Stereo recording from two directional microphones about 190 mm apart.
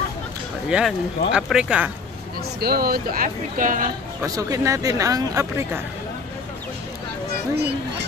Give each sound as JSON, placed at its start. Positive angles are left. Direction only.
{"t": 0.7, "sound": "speech", "side_deg": -5}
{"t": 2.6, "sound": "speech", "side_deg": -55}
{"t": 4.2, "sound": "speech", "side_deg": -20}